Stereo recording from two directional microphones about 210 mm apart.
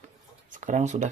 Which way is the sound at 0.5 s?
35° right (ahead or behind).